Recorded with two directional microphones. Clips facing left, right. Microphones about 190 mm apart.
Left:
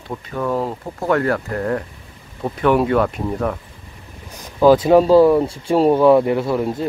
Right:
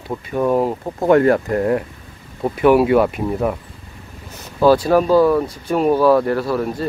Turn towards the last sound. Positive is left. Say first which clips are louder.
# left 1 dB
turn(degrees=20)  # may be behind; listen again after turning